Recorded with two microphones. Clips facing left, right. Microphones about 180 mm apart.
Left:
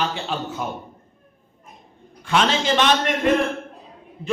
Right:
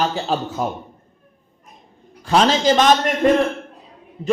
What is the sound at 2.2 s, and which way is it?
Speech, 35° right (ahead or behind).